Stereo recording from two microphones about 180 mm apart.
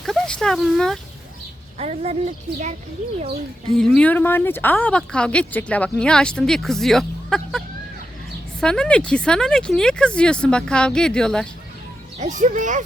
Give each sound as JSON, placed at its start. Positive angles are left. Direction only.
{"t": 0.0, "sound": "a sound", "side_deg": 0}
{"t": 1.8, "sound": "a woman's voice", "side_deg": -35}
{"t": 3.8, "sound": "speech", "side_deg": 5}
{"t": 8.6, "sound": "speech", "side_deg": 5}
{"t": 12.2, "sound": "speech", "side_deg": -45}